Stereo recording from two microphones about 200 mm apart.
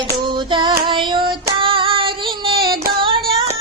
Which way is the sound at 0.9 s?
25° right (ahead or behind).